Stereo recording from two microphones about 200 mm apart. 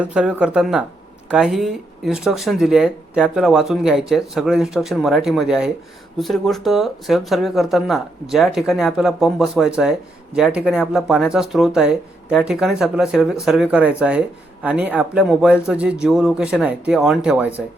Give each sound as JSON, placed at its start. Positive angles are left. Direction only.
{"t": 0.0, "sound": "speech", "side_deg": -5}